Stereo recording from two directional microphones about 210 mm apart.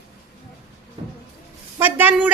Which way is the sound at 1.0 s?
25° right (ahead or behind).